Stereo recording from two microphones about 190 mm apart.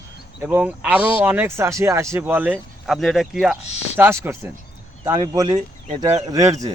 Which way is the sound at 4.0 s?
10° right (ahead or behind).